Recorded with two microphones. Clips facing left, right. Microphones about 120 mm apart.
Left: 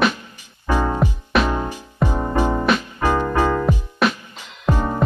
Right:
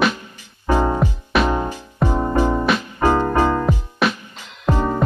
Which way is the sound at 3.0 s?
15° right (ahead or behind).